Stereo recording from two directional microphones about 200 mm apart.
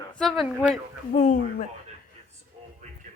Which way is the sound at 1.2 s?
40° left (ahead or behind).